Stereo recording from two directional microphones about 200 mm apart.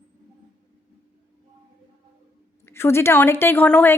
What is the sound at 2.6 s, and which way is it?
A woman's voice, 10° left (ahead or behind).